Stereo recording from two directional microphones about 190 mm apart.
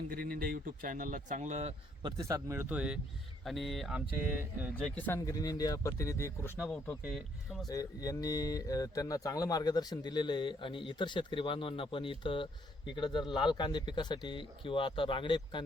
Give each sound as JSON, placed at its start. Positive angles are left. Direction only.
{"t": 0.1, "sound": "speech", "side_deg": -50}
{"t": 2.0, "sound": "speech", "side_deg": -20}
{"t": 4.7, "sound": "speech", "side_deg": 5}
{"t": 7.7, "sound": "speech", "side_deg": 20}
{"t": 13.5, "sound": "speech", "side_deg": 25}